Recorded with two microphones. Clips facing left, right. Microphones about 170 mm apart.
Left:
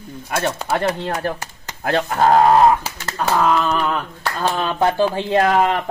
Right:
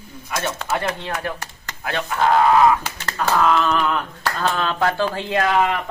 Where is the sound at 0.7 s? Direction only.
35° left (ahead or behind).